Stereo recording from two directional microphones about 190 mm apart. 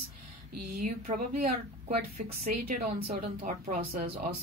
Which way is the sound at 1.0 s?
45° right (ahead or behind).